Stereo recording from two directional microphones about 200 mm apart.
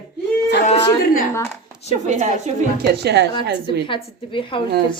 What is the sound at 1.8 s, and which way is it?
Speech, 35° right (ahead or behind).